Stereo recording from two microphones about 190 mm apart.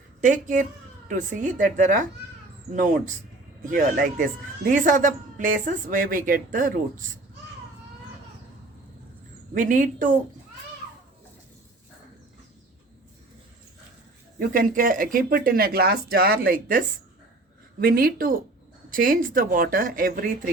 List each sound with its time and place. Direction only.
1.0 s speech: 40° right (ahead or behind)
9.6 s speech: 45° right (ahead or behind)
14.3 s speech: 45° right (ahead or behind)